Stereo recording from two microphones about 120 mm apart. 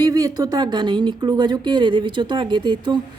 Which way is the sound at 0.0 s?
30° right (ahead or behind).